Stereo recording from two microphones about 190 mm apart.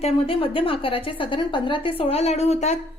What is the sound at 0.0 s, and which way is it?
A woman's voice, 30° left (ahead or behind).